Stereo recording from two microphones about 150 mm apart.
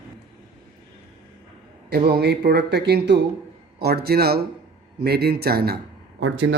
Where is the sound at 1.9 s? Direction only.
90° right.